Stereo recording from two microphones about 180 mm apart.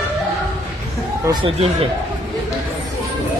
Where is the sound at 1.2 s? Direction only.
25° right (ahead or behind).